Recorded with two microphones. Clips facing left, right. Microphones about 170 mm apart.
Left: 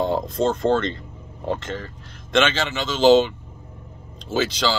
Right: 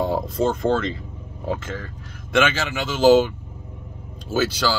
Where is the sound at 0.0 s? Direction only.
5° right (ahead or behind).